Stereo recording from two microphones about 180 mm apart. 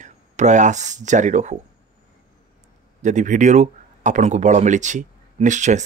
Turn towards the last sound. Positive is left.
turn(degrees=-40)  # may be behind; listen again after turning